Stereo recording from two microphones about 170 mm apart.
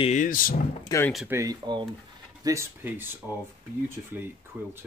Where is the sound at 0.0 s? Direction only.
45° left (ahead or behind).